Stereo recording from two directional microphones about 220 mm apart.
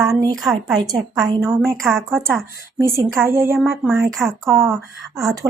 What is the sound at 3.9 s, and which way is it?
Speech, 10° right (ahead or behind).